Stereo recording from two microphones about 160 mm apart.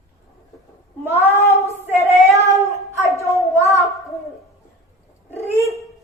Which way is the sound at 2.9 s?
20° left (ahead or behind).